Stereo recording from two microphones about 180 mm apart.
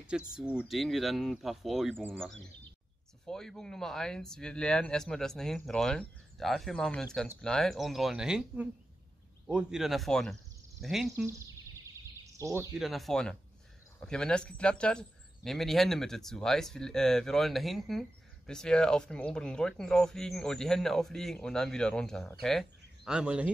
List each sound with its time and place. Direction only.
0.1 s speech: 5° right (ahead or behind)
3.3 s speech: 5° left (ahead or behind)
11.1 s speech: 15° right (ahead or behind)
12.7 s speech: centre (ahead or behind)